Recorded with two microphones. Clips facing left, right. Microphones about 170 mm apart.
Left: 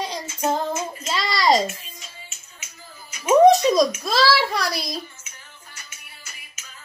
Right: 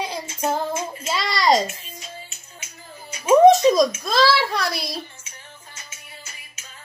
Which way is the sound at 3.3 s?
Centre (ahead or behind).